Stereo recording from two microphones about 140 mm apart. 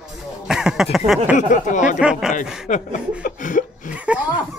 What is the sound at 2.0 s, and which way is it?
Speech, 5° right (ahead or behind).